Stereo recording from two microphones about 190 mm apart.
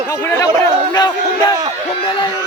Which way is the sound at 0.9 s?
20° left (ahead or behind).